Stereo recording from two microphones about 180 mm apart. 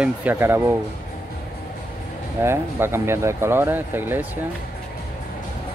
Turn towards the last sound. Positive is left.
turn(degrees=-10)  # may be behind; listen again after turning